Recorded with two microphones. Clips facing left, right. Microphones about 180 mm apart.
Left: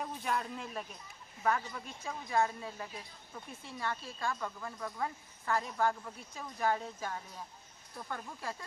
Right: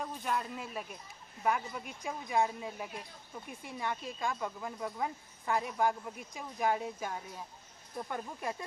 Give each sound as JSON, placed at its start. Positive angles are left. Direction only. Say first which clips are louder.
{"t": 0.0, "sound": "speech", "louder": "even", "side_deg": 0}